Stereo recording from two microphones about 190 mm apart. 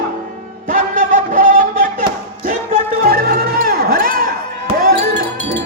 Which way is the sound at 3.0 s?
50° right (ahead or behind).